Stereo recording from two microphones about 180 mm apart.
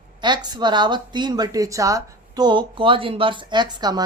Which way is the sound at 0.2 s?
25° right (ahead or behind).